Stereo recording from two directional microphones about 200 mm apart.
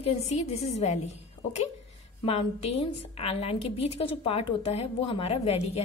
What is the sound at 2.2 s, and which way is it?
A woman's voice, 30° left (ahead or behind).